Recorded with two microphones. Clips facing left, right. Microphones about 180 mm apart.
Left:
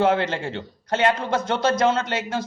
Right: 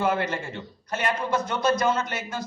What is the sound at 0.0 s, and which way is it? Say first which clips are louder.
A man's voice: left 5 dB; 75° left (ahead or behind).